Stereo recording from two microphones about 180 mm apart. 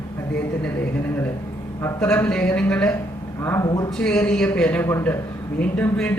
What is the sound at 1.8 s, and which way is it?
Speech, 10° left (ahead or behind).